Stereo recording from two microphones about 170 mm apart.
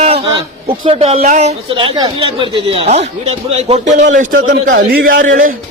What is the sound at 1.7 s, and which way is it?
Speech, 30° right (ahead or behind).